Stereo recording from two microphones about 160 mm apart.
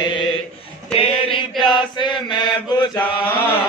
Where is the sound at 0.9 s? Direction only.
35° left (ahead or behind).